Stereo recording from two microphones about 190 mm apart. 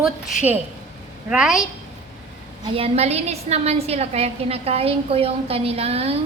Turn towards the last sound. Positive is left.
turn(degrees=-30)  # may be behind; listen again after turning